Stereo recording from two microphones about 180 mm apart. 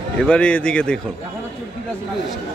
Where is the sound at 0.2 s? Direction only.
5° left (ahead or behind).